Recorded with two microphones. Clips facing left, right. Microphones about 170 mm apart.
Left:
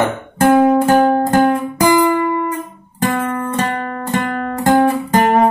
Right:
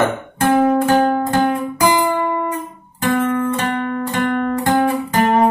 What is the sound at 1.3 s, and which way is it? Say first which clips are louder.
Music: left 3 dB; 45° left (ahead or behind).